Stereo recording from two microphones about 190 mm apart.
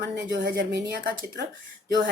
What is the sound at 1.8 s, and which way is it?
Speech, 50° right (ahead or behind).